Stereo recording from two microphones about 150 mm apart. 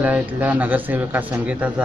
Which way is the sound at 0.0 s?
10° right (ahead or behind).